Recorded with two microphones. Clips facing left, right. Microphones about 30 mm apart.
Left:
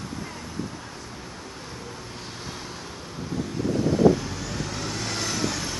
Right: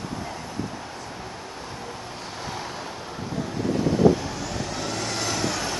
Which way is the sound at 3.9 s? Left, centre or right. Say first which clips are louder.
Even; centre.